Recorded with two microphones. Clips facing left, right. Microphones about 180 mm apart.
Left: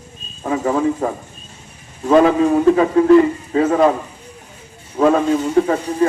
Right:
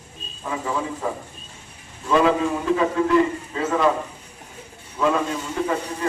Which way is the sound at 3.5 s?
40° left (ahead or behind).